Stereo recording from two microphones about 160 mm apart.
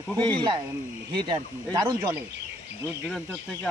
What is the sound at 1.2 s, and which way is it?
Speech, 25° right (ahead or behind).